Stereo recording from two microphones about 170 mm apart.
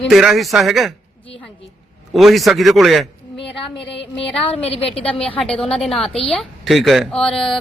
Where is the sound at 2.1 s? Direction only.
Centre (ahead or behind).